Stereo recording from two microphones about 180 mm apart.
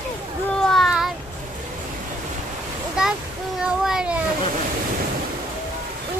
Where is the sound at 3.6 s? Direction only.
5° right (ahead or behind).